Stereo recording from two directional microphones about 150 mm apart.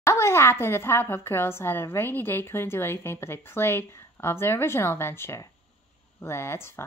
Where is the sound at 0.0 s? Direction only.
20° left (ahead or behind).